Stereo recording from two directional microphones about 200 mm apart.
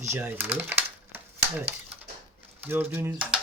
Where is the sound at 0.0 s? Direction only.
10° right (ahead or behind).